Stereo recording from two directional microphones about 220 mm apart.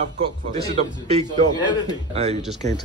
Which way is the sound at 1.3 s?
20° left (ahead or behind).